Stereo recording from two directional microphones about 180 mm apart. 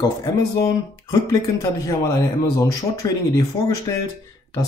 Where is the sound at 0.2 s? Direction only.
20° left (ahead or behind).